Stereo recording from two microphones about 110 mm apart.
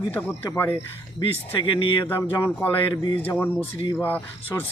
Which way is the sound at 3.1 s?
20° left (ahead or behind).